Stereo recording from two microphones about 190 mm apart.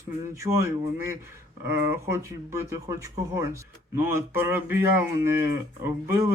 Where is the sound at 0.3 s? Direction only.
15° right (ahead or behind).